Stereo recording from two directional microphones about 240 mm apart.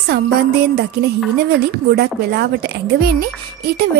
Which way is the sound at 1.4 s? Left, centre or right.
Right.